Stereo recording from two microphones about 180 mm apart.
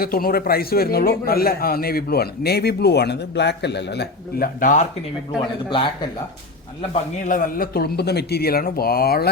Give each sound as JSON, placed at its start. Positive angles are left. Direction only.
{"t": 0.0, "sound": "a man's voice", "side_deg": 55}
{"t": 4.6, "sound": "speech", "side_deg": 45}
{"t": 5.6, "sound": "speech", "side_deg": 25}
{"t": 6.9, "sound": "a man's voice", "side_deg": 45}